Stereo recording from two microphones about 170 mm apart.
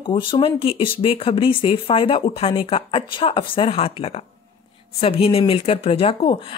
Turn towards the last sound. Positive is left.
turn(degrees=30)  # may be behind; listen again after turning